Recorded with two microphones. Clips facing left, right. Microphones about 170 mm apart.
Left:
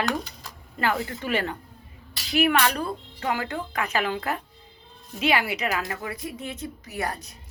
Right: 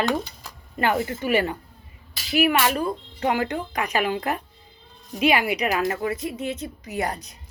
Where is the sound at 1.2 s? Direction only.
10° right (ahead or behind).